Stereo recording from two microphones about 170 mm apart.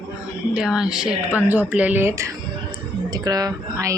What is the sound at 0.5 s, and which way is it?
Speech, 5° right (ahead or behind).